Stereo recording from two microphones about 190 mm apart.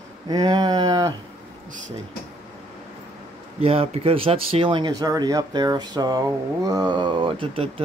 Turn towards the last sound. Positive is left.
turn(degrees=-30)  # may be behind; listen again after turning